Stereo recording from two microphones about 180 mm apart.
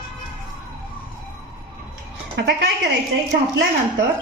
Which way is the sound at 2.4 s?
80° right.